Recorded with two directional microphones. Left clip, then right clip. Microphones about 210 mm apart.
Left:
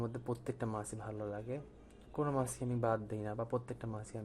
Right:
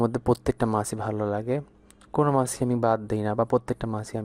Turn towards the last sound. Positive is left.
turn(degrees=-40)  # may be behind; listen again after turning